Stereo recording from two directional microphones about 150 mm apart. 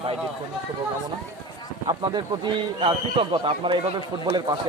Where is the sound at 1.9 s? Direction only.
30° right (ahead or behind).